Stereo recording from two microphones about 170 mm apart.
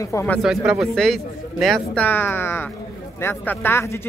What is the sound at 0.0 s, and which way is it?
Speech, 15° left (ahead or behind).